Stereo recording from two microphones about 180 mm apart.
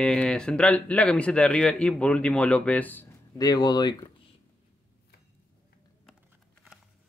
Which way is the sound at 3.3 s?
20° left (ahead or behind).